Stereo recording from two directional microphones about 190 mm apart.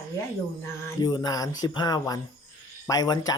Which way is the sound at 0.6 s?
20° left (ahead or behind).